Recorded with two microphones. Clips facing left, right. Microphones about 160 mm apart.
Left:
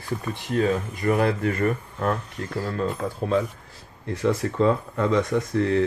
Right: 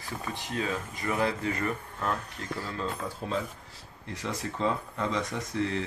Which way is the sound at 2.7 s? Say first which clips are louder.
Left 9 dB; 55° left (ahead or behind).